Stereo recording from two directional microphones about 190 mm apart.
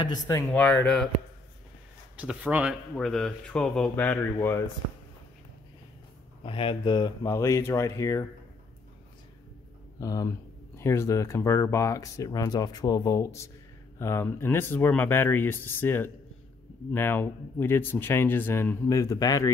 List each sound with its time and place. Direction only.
0.0 s speech: 15° left (ahead or behind)
2.1 s speech: 10° right (ahead or behind); by 4.6 s 15° left (ahead or behind)
6.4 s speech: 30° left (ahead or behind)
9.9 s speech: 20° left (ahead or behind)